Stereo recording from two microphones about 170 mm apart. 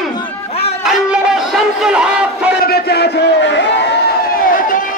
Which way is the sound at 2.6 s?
65° left (ahead or behind).